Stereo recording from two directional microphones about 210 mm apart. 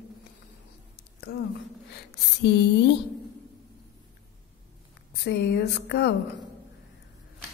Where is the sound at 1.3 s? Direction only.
45° left (ahead or behind).